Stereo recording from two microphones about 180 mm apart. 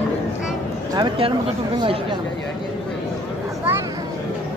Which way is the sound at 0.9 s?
25° right (ahead or behind).